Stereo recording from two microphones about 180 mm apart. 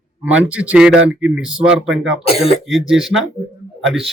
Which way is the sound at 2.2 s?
35° left (ahead or behind).